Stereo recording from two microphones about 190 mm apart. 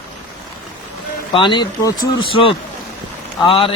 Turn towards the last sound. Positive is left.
turn(degrees=30)  # may be behind; listen again after turning